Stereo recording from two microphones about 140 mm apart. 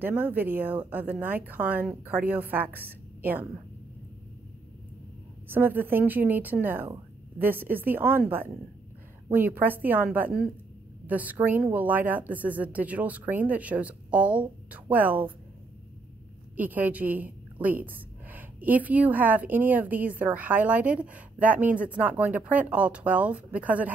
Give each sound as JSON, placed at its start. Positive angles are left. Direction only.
{"t": 0.0, "sound": "a woman's voice", "side_deg": -15}
{"t": 5.5, "sound": "a woman's voice", "side_deg": -15}
{"t": 9.3, "sound": "a woman's voice", "side_deg": -15}
{"t": 16.5, "sound": "a woman's voice", "side_deg": -10}